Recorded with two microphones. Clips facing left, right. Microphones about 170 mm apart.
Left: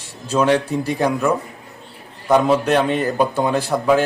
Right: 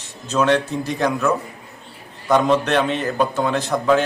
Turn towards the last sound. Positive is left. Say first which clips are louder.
# left 1 dB
turn(degrees=10)  # may be behind; listen again after turning